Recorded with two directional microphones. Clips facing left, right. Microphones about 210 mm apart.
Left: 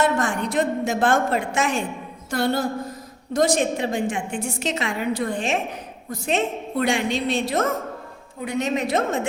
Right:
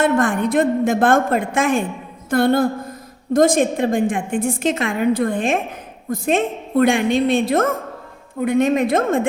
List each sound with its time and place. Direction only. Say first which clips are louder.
0.0 s a woman's voice: right 5 dB; 55° right (ahead or behind)